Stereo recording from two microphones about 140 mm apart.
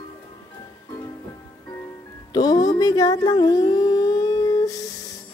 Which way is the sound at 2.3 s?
30° left (ahead or behind).